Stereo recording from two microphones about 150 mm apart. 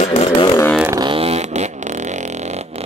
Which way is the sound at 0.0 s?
45° left (ahead or behind).